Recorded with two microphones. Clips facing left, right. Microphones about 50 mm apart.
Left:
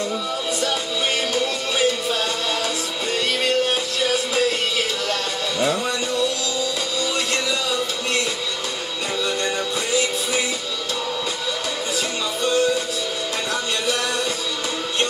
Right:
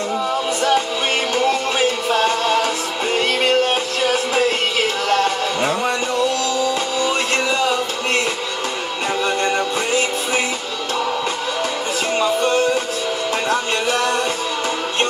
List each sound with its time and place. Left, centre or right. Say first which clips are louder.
1.3 s music: right 5 dB; right
12.2 s music: right 4 dB; right